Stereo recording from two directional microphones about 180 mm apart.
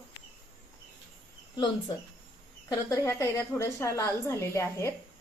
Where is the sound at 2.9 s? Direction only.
15° left (ahead or behind).